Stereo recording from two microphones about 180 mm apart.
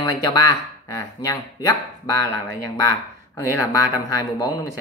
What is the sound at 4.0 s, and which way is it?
Speech, 20° left (ahead or behind).